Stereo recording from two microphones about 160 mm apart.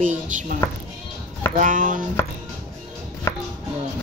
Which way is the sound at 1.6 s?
55° right (ahead or behind).